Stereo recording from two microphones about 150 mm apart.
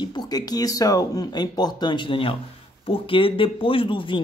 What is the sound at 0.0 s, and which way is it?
Speech, 25° left (ahead or behind).